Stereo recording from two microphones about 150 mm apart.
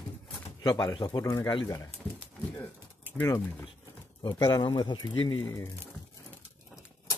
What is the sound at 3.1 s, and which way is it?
A man's voice, 15° left (ahead or behind).